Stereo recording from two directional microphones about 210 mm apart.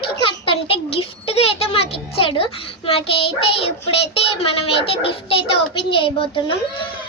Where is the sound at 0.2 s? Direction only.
25° left (ahead or behind).